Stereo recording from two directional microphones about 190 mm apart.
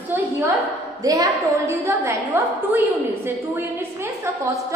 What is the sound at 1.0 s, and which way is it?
A woman's voice, 20° right (ahead or behind).